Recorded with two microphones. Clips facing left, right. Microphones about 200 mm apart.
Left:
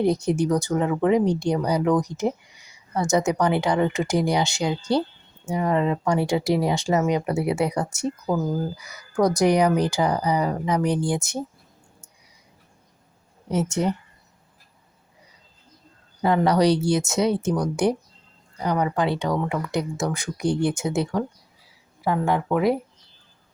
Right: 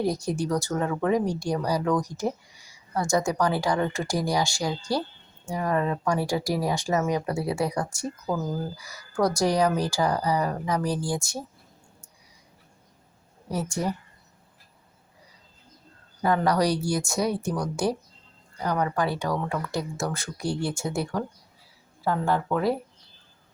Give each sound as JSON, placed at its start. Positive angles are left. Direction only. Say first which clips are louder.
{"t": 0.0, "sound": "speech", "louder": "left 5 dB", "side_deg": 20}
{"t": 13.5, "sound": "speech", "louder": "left 5 dB", "side_deg": 20}
{"t": 16.2, "sound": "speech", "louder": "left 4 dB", "side_deg": 25}